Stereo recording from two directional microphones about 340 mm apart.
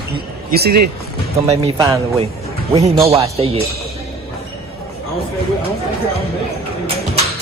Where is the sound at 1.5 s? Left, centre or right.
Centre.